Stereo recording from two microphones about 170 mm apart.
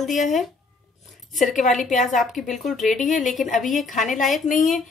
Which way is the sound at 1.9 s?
Centre (ahead or behind).